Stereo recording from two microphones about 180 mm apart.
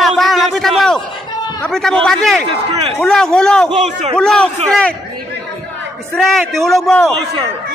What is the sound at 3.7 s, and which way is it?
Speech, 40° right (ahead or behind).